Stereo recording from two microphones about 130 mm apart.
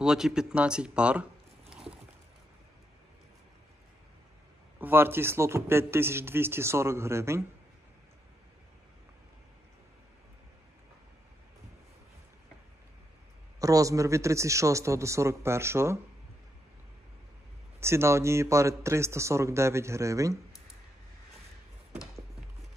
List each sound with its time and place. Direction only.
0.0 s speech: 5° right (ahead or behind)
1.7 s a sound: 5° right (ahead or behind)
4.7 s a man's voice: 15° right (ahead or behind)
13.6 s a man's voice: 25° right (ahead or behind)
17.7 s a man's voice: 20° right (ahead or behind)